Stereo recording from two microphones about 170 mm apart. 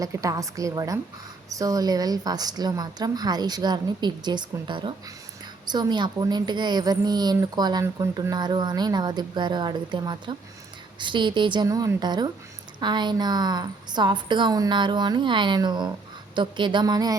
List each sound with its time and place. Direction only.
0.0 s a woman's voice: 20° right (ahead or behind)